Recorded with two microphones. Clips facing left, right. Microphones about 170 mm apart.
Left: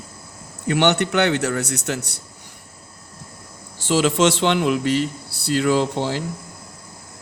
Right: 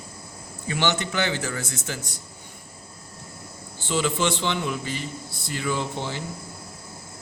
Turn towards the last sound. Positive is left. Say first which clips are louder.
# left 8 dB
turn(degrees=70)  # may be behind; listen again after turning